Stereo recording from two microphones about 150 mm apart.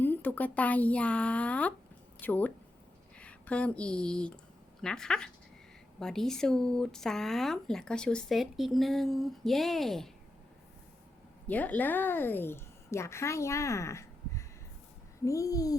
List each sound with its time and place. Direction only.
0.0 s speech: 10° left (ahead or behind)
11.4 s a woman's voice: 10° left (ahead or behind)